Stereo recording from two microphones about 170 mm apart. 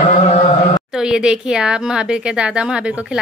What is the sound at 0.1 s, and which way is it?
Mantra, 45° left (ahead or behind).